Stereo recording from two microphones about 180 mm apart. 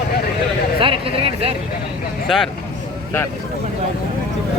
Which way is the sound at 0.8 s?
30° right (ahead or behind).